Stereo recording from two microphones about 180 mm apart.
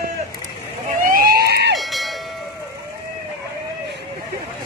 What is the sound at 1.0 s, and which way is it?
Vehicle, 55° right (ahead or behind).